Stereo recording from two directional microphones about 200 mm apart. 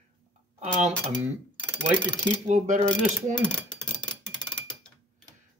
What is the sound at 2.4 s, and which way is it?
Mechanisms, 35° right (ahead or behind).